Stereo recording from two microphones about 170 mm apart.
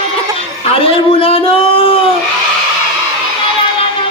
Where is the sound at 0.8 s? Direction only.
35° left (ahead or behind).